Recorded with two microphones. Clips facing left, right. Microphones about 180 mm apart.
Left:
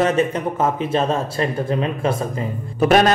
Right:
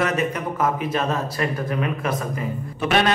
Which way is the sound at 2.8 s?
40° left (ahead or behind).